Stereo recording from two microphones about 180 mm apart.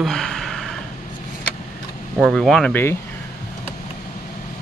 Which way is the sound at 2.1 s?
Centre (ahead or behind).